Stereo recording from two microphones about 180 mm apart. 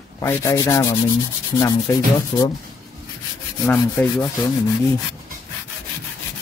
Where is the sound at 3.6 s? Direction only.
15° left (ahead or behind).